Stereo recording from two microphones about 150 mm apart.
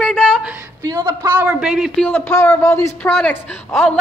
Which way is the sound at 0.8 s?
20° right (ahead or behind).